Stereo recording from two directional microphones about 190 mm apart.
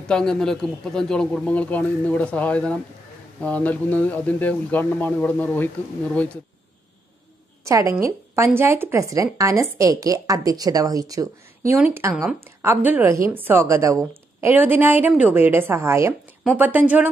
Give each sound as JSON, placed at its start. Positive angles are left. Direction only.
{"t": 0.1, "sound": "a man's voice", "side_deg": 5}
{"t": 7.6, "sound": "a woman's voice", "side_deg": -15}